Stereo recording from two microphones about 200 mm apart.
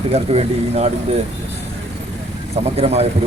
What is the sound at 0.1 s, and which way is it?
Speech, 30° right (ahead or behind).